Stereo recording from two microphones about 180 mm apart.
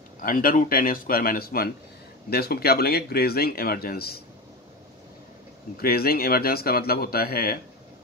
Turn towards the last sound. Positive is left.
turn(degrees=55)  # may be behind; listen again after turning